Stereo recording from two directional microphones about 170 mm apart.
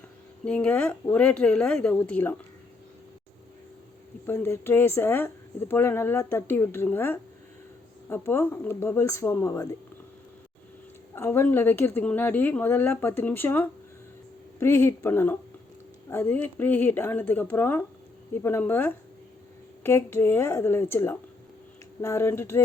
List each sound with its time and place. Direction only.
0.4 s speech: 5° left (ahead or behind)
4.3 s speech: 15° left (ahead or behind)
11.1 s speech: 15° left (ahead or behind)